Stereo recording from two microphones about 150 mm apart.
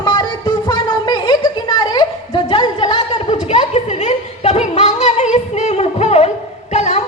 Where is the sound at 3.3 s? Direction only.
45° left (ahead or behind).